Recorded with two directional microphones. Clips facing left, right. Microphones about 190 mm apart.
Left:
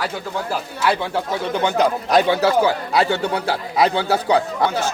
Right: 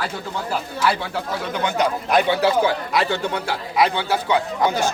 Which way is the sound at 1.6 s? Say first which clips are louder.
Left 2 dB; 35° left (ahead or behind).